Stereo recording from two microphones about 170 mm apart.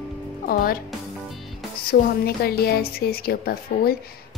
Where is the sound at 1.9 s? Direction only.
65° left (ahead or behind).